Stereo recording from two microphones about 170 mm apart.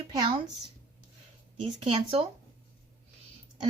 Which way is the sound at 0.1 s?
25° right (ahead or behind).